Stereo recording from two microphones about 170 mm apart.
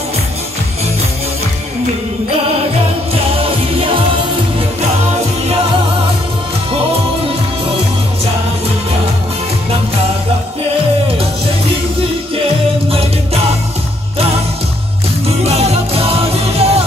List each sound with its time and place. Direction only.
12.9 s music: 35° right (ahead or behind)
15.4 s music: 40° right (ahead or behind)